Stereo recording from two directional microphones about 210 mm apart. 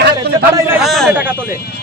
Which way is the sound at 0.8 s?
Centre (ahead or behind).